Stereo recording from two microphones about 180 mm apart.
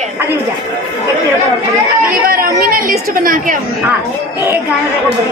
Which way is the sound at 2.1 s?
50° right (ahead or behind).